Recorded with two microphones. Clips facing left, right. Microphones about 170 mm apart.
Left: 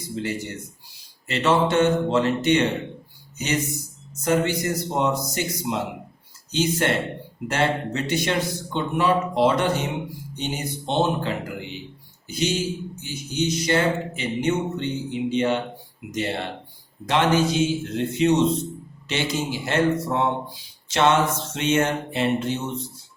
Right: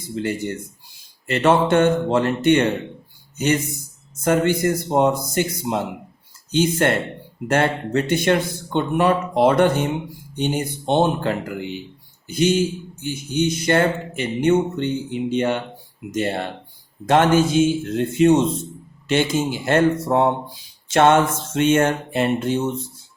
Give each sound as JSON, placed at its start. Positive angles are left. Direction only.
{"t": 0.2, "sound": "speech", "side_deg": -55}
{"t": 4.2, "sound": "a man's voice", "side_deg": -55}